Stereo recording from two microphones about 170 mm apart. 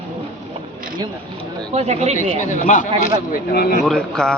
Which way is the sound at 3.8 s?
5° left (ahead or behind).